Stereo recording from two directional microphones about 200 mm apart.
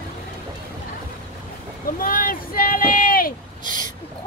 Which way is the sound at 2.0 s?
45° left (ahead or behind).